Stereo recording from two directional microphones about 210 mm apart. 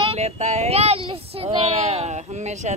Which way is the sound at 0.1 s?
30° right (ahead or behind).